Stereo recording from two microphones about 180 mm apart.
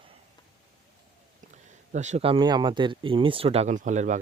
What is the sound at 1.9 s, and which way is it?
Speech, 40° right (ahead or behind).